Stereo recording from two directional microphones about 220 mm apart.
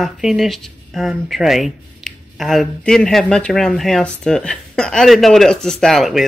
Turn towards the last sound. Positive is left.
turn(degrees=0)  # may be behind; listen again after turning